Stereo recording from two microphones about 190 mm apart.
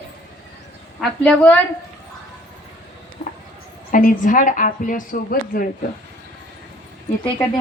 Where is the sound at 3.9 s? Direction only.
45° left (ahead or behind).